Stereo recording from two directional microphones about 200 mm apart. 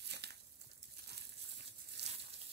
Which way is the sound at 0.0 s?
55° right (ahead or behind).